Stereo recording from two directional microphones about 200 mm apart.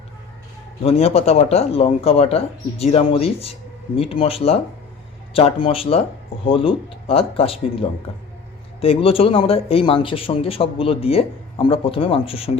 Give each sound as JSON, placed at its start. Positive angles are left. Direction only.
{"t": 0.8, "sound": "a man's voice", "side_deg": 30}